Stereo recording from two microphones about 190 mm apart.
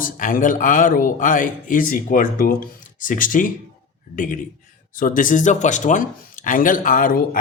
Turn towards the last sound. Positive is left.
turn(degrees=45)  # may be behind; listen again after turning